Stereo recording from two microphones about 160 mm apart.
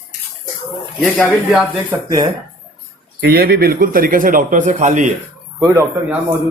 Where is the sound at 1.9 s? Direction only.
15° right (ahead or behind).